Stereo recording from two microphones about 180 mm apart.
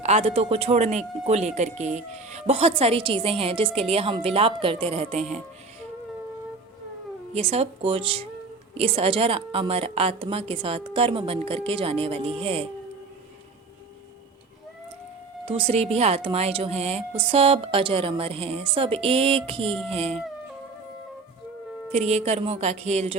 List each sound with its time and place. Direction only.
0.0 s speech: 35° right (ahead or behind)
7.3 s speech: 35° right (ahead or behind)
15.4 s speech: 30° right (ahead or behind)
21.9 s speech: 35° right (ahead or behind)